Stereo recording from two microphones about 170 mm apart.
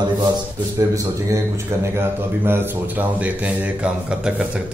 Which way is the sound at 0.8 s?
25° right (ahead or behind).